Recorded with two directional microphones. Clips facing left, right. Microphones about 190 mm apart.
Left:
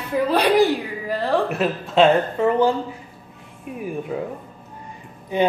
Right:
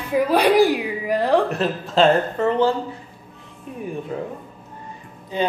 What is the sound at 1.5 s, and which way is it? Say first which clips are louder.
A woman's voice: even; 5° left (ahead or behind).